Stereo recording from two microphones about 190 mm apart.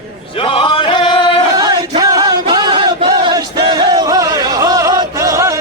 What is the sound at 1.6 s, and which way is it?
Chant, 20° right (ahead or behind).